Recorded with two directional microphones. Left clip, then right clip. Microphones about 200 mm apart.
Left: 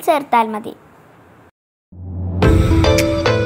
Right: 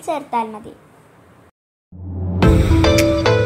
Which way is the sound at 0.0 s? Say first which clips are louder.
Left 7 dB; 30° left (ahead or behind).